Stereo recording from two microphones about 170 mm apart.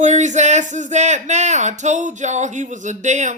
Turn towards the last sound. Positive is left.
turn(degrees=-45)  # may be behind; listen again after turning